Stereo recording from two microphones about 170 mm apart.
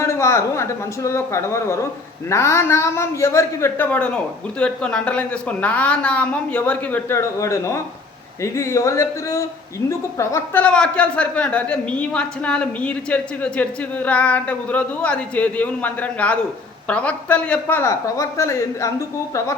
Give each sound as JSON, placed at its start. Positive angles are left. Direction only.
{"t": 0.0, "sound": "a woman's voice", "side_deg": 15}